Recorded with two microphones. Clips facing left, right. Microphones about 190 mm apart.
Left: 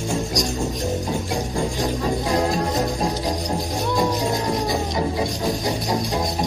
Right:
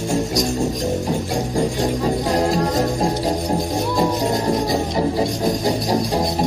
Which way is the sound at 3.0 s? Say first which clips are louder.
Right 4 dB; 25° right (ahead or behind).